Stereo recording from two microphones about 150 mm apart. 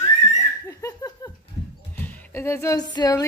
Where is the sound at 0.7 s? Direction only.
20° left (ahead or behind).